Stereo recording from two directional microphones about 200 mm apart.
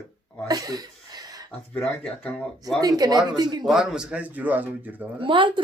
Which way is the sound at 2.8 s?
20° right (ahead or behind).